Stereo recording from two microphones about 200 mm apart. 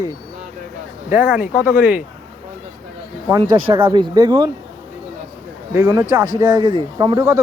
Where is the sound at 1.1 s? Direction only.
5° right (ahead or behind).